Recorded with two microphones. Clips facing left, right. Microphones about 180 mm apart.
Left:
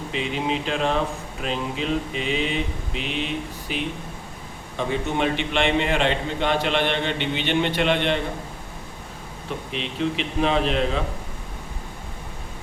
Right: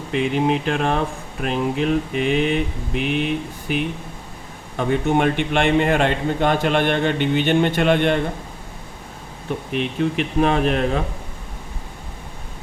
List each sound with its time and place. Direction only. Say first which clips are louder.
0.1 s speech: right 7 dB; 55° right (ahead or behind)
4.8 s a man's voice: right 5 dB; 55° right (ahead or behind)
9.7 s a man's voice: right 5 dB; 50° right (ahead or behind)